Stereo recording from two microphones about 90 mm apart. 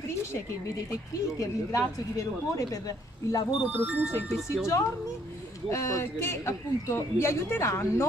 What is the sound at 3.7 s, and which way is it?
Speech, 20° right (ahead or behind).